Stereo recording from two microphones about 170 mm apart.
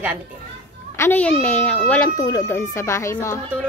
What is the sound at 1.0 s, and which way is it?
A woman's voice, 10° left (ahead or behind).